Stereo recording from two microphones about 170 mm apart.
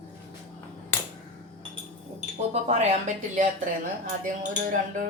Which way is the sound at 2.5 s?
40° right (ahead or behind).